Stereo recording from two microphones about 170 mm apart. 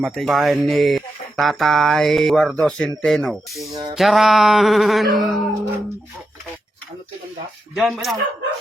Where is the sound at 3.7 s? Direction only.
25° right (ahead or behind).